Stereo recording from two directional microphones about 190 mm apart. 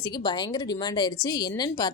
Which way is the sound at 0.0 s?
20° left (ahead or behind).